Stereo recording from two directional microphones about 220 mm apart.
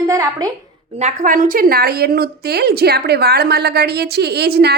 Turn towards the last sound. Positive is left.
turn(degrees=-45)  # may be behind; listen again after turning